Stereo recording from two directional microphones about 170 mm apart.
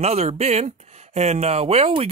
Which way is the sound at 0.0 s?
40° right (ahead or behind).